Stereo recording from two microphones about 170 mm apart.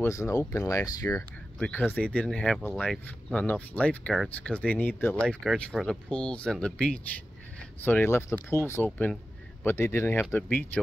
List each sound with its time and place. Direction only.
0.0 s speech: 15° left (ahead or behind)